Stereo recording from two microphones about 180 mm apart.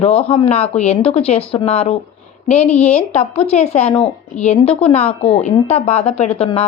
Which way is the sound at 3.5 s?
40° left (ahead or behind).